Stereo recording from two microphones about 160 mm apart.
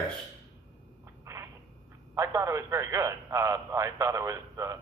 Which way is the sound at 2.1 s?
20° right (ahead or behind).